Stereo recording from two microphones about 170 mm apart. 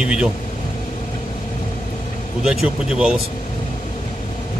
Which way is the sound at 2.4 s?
5° right (ahead or behind).